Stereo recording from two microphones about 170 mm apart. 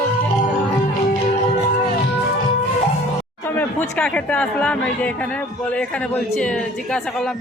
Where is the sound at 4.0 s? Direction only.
5° left (ahead or behind).